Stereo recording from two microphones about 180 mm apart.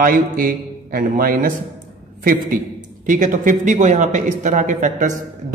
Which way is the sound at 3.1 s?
45° right (ahead or behind).